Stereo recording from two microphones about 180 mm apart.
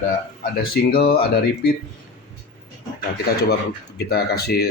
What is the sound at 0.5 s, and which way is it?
Speech, 55° left (ahead or behind).